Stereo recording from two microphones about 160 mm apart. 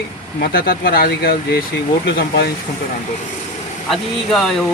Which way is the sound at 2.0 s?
90° left.